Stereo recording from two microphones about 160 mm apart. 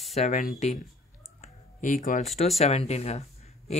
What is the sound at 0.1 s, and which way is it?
Speech, 50° left (ahead or behind).